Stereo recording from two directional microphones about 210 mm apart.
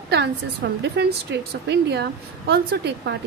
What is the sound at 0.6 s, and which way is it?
A woman's voice, 55° right (ahead or behind).